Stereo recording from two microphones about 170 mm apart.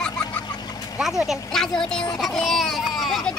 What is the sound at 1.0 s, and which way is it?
Speech, centre (ahead or behind).